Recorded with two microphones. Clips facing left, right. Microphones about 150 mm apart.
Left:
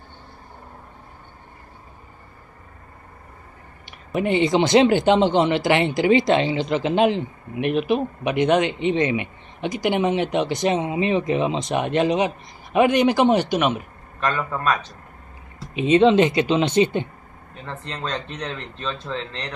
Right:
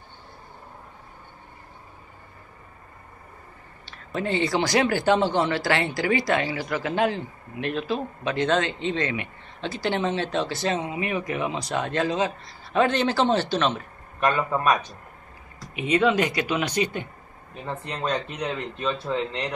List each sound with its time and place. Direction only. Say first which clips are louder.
3.8 s speech: left 5 dB; 15° left (ahead or behind)
14.2 s speech: right 1 dB; 15° right (ahead or behind)
15.6 s speech: left 6 dB; 25° left (ahead or behind)
17.6 s speech: right 2 dB; 10° right (ahead or behind)